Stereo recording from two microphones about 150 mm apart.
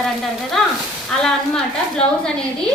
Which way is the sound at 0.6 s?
Centre (ahead or behind).